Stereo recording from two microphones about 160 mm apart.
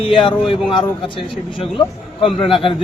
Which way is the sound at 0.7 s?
30° left (ahead or behind).